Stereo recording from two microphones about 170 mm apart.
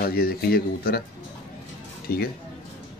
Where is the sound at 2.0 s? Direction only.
65° left (ahead or behind).